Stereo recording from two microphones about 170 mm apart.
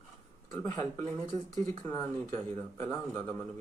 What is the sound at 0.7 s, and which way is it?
Speech, 20° left (ahead or behind).